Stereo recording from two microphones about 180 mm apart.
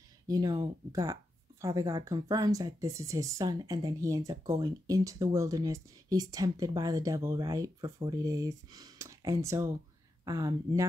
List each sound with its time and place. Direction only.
0.3 s speech: 20° right (ahead or behind)